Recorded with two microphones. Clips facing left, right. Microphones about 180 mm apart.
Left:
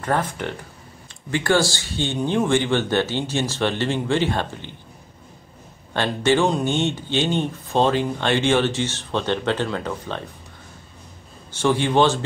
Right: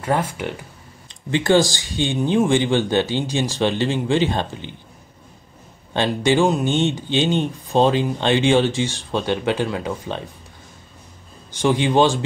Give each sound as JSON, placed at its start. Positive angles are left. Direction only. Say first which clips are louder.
{"t": 0.0, "sound": "speech", "louder": "right 1 dB", "side_deg": -10}
{"t": 5.9, "sound": "speech", "louder": "right 2 dB", "side_deg": -15}
{"t": 11.5, "sound": "speech", "louder": "right 2 dB", "side_deg": -15}